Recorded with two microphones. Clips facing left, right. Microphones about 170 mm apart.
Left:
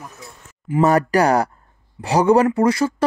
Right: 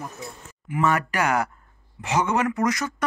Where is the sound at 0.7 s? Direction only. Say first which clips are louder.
Left 8 dB; 35° left (ahead or behind).